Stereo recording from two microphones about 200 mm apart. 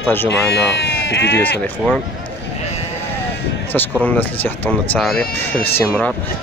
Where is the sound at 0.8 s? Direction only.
60° left (ahead or behind).